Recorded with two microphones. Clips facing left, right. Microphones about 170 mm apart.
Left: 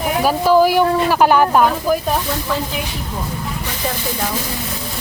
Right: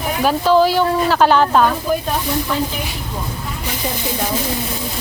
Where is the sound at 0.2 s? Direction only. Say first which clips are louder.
Even; 10° left (ahead or behind).